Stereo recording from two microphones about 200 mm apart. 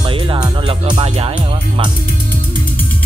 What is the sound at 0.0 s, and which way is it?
Music, 25° right (ahead or behind).